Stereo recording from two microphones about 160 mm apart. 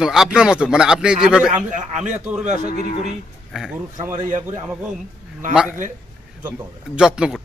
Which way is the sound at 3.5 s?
5° right (ahead or behind).